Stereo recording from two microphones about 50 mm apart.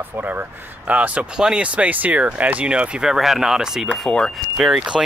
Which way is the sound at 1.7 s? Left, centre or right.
Right.